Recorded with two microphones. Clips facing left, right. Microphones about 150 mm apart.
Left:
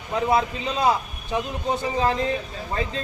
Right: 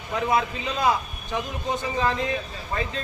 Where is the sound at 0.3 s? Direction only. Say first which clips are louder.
Left 2 dB; 30° left (ahead or behind).